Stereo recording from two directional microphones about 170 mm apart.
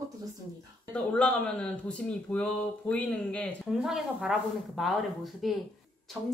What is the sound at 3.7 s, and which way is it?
Speech, 5° right (ahead or behind).